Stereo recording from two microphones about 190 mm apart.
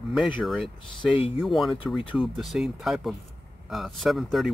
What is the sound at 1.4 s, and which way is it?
Speech, centre (ahead or behind).